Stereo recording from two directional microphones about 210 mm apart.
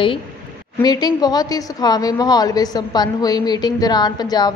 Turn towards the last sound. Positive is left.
turn(degrees=20)  # may be behind; listen again after turning